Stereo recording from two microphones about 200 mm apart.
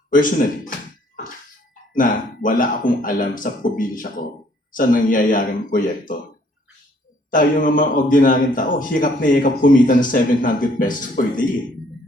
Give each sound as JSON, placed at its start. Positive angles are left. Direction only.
{"t": 0.1, "sound": "speech", "side_deg": 40}
{"t": 1.9, "sound": "speech", "side_deg": 45}
{"t": 7.3, "sound": "speech", "side_deg": 40}